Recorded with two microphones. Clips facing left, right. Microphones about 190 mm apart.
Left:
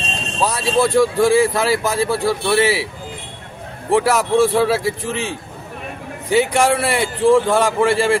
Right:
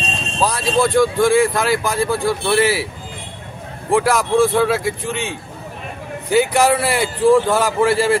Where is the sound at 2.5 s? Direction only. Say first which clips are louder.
Even; 25° left (ahead or behind).